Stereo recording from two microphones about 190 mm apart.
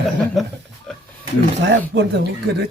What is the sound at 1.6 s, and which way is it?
Speech, 65° right (ahead or behind).